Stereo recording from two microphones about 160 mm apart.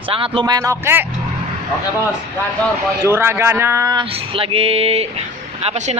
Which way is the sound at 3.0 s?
15° right (ahead or behind).